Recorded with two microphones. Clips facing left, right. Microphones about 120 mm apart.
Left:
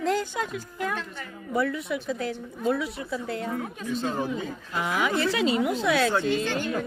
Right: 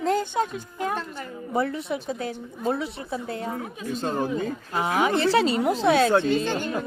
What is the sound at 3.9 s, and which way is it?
Speech, 45° right (ahead or behind).